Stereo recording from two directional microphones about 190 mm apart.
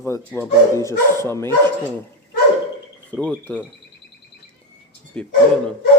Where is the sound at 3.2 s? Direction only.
5° left (ahead or behind).